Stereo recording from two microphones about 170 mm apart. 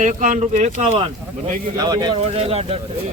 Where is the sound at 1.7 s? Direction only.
25° right (ahead or behind).